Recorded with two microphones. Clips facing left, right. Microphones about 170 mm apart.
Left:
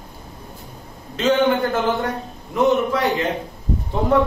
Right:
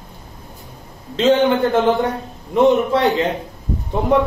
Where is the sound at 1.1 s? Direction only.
30° right (ahead or behind).